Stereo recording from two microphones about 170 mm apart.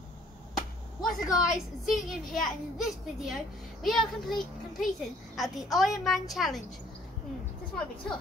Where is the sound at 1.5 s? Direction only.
Centre (ahead or behind).